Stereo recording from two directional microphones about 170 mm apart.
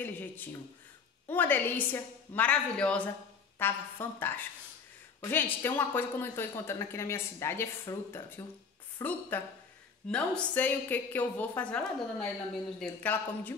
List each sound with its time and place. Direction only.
0.0 s a woman's voice: 10° left (ahead or behind)